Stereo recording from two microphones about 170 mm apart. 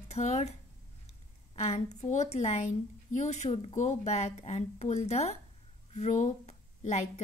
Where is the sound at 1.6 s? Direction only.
35° left (ahead or behind).